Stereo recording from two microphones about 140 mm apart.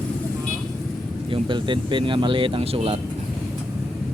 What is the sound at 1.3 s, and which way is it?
Speech, 35° right (ahead or behind).